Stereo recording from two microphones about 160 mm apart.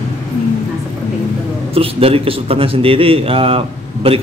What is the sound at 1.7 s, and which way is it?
A man's voice, 35° right (ahead or behind).